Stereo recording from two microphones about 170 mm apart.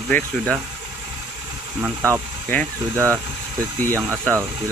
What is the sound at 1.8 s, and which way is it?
Speech, 15° right (ahead or behind).